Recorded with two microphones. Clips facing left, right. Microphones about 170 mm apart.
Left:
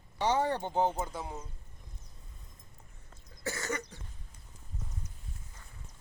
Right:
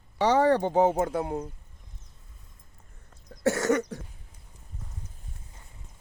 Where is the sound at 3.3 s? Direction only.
80° right.